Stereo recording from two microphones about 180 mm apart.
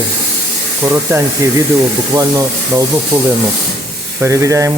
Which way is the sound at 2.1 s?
15° right (ahead or behind).